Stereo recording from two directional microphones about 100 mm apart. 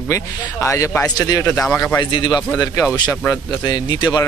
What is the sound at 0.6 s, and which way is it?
Speech, 30° left (ahead or behind).